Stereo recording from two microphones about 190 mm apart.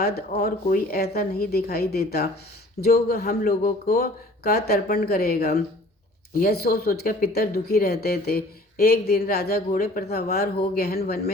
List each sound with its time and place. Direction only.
0.0 s a woman's voice: 55° left (ahead or behind)